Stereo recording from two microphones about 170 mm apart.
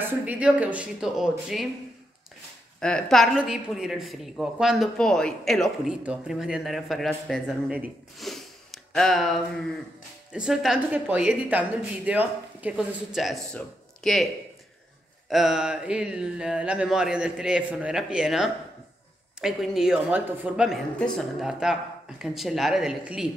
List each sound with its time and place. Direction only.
0.0 s speech: 10° right (ahead or behind)
2.8 s a woman's voice: 5° left (ahead or behind)
8.3 s a sound: centre (ahead or behind)
10.3 s a woman's voice: 5° right (ahead or behind)